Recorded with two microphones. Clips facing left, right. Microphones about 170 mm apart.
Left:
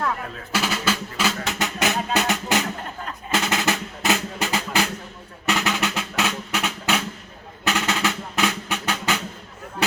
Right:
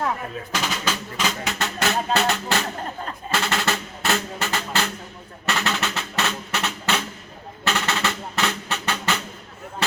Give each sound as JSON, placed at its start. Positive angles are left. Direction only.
{"t": 0.5, "sound": "music", "side_deg": 10}